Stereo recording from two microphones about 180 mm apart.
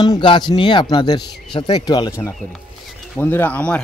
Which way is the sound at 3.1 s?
10° left (ahead or behind).